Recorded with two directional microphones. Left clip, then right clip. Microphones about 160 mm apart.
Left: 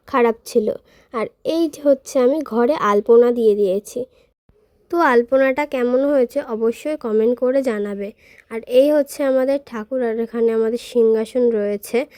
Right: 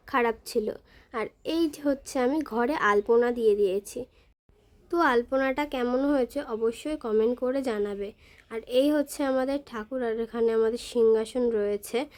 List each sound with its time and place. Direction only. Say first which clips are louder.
0.0 s speech: left 9 dB; 35° left (ahead or behind)